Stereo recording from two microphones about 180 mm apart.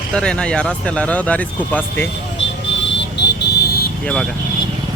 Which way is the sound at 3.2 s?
75° left (ahead or behind).